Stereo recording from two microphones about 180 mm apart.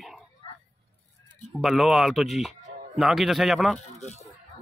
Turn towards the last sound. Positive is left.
turn(degrees=40)  # may be behind; listen again after turning